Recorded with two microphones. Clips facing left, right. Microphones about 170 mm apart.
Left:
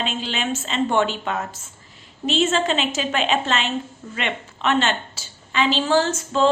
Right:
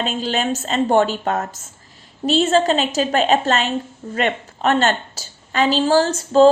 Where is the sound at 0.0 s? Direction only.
40° right (ahead or behind).